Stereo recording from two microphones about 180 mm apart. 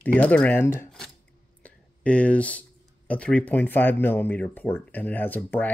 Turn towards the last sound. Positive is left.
turn(degrees=10)  # may be behind; listen again after turning